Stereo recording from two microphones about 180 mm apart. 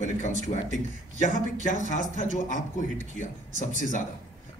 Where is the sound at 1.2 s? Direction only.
45° left (ahead or behind).